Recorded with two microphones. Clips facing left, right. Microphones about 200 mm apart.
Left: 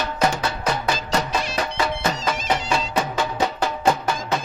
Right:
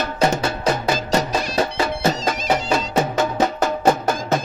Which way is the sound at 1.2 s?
30° right (ahead or behind).